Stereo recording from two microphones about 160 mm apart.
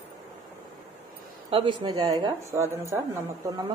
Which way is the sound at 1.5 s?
30° right (ahead or behind).